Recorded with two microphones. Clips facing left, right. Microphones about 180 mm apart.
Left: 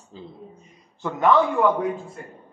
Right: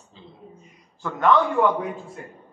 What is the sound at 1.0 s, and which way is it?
Speech, 10° left (ahead or behind).